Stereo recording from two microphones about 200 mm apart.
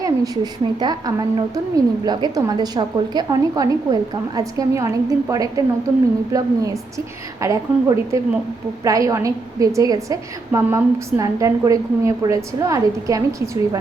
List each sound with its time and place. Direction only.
0.8 s a woman's voice: 20° right (ahead or behind)